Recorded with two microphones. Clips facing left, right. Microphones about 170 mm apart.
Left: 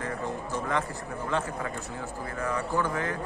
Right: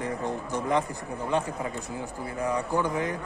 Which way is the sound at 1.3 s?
20° right (ahead or behind).